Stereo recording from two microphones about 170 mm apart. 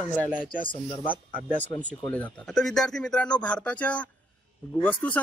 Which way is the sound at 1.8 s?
10° left (ahead or behind).